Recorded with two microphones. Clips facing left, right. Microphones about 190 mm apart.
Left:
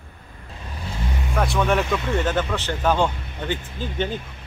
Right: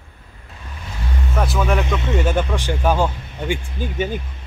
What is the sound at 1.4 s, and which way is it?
Speech, centre (ahead or behind).